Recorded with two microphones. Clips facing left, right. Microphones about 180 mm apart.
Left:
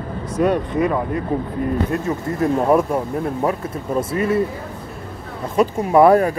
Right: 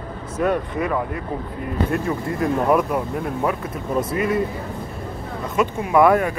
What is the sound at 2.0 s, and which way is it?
Speech, 25° left (ahead or behind).